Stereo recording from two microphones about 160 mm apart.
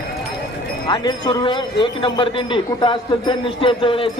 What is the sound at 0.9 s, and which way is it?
A man's voice, 25° left (ahead or behind).